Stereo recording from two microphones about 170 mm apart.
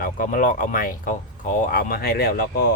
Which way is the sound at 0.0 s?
50° left (ahead or behind).